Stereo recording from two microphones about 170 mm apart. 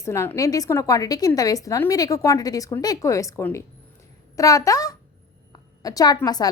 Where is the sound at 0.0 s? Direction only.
15° left (ahead or behind).